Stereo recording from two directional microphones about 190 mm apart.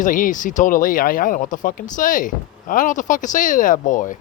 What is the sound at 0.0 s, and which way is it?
Speech, 45° left (ahead or behind).